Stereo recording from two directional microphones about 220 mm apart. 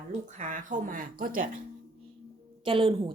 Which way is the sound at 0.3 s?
35° right (ahead or behind).